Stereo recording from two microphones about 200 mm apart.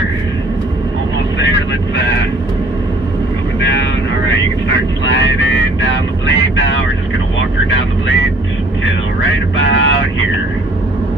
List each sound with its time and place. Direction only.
5.1 s vehicle: 65° left (ahead or behind)
9.2 s music: 70° left (ahead or behind)